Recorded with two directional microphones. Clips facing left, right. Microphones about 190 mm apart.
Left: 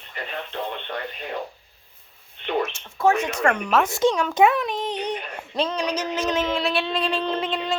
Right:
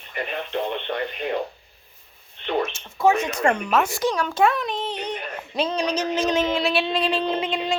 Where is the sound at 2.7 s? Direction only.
5° right (ahead or behind).